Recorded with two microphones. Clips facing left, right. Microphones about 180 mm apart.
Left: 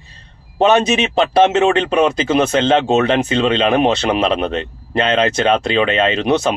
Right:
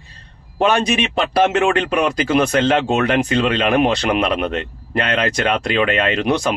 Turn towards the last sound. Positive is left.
turn(degrees=25)  # may be behind; listen again after turning